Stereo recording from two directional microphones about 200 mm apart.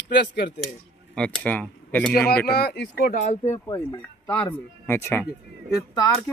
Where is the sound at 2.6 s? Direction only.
55° left (ahead or behind).